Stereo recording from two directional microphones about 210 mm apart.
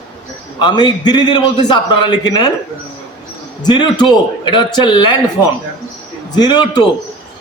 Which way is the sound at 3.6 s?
20° left (ahead or behind).